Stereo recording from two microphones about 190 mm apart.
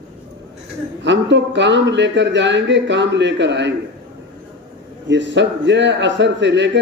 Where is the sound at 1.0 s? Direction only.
70° right (ahead or behind).